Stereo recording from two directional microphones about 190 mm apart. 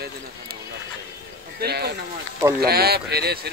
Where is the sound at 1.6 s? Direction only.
55° right (ahead or behind).